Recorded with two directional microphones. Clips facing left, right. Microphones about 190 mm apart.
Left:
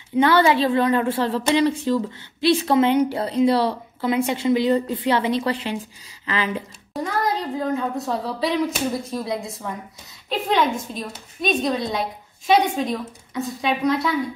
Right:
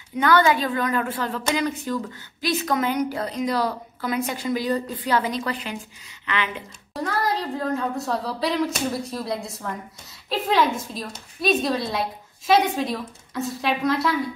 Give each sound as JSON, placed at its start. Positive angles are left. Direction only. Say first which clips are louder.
{"t": 0.1, "sound": "speech", "louder": "left 2 dB", "side_deg": 25}
{"t": 6.9, "sound": "a woman's voice", "louder": "left 1 dB", "side_deg": 0}